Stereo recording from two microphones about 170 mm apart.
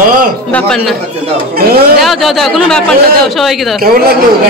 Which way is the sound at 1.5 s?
65° right (ahead or behind).